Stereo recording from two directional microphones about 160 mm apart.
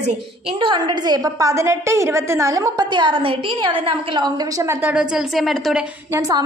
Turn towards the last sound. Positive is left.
turn(degrees=-20)  # may be behind; listen again after turning